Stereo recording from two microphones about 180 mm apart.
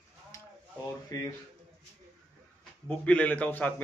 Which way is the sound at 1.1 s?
20° left (ahead or behind).